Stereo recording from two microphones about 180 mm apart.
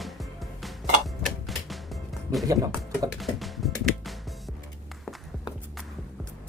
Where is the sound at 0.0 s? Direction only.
Centre (ahead or behind).